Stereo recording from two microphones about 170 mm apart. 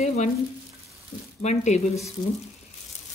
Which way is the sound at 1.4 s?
45° left (ahead or behind).